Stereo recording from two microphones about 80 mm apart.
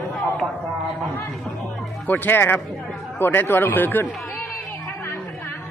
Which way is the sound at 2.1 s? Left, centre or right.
Left.